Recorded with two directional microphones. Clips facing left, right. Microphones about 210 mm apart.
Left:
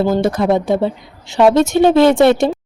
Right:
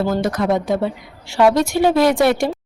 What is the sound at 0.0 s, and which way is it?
A woman's voice, 25° left (ahead or behind).